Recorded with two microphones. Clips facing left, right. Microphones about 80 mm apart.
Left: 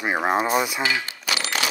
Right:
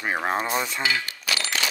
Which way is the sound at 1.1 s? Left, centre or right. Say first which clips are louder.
Left 2 dB; left.